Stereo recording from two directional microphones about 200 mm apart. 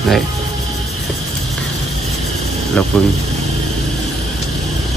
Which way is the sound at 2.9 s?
5° left (ahead or behind).